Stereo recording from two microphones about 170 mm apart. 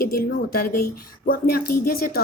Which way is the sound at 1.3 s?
60° left (ahead or behind).